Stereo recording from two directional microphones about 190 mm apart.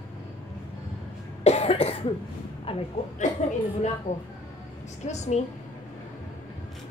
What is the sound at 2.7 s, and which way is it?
Speech, 30° left (ahead or behind).